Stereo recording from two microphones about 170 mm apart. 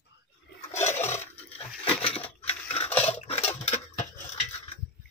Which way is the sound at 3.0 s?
35° left (ahead or behind).